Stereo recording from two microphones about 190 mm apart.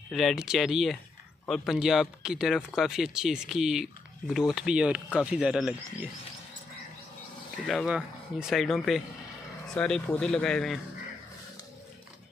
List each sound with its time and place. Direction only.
0.1 s speech: centre (ahead or behind)
7.6 s speech: centre (ahead or behind)